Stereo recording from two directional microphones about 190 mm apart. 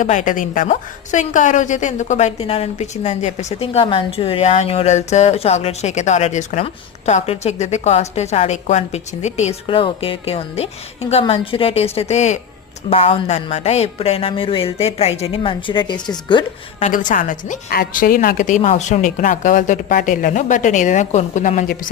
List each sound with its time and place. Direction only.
0.0 s a woman's voice: 40° left (ahead or behind); by 16.5 s 25° left (ahead or behind)
16.8 s a woman's voice: 40° left (ahead or behind)